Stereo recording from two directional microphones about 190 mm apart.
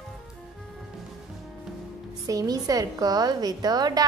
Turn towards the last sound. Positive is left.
turn(degrees=-20)  # may be behind; listen again after turning